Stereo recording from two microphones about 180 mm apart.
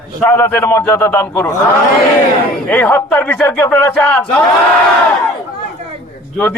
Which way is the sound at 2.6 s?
10° left (ahead or behind).